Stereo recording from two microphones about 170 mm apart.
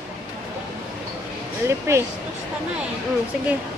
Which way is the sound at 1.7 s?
15° right (ahead or behind).